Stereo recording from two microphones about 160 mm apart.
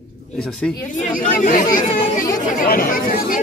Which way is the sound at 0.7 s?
55° left (ahead or behind).